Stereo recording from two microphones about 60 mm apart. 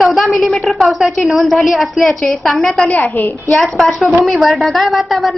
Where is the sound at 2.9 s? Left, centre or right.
Left.